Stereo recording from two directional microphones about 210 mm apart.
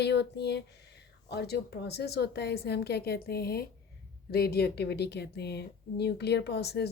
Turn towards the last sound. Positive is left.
turn(degrees=50)  # may be behind; listen again after turning